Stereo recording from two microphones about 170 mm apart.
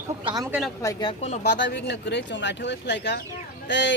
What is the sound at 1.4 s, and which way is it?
Speech, 80° left.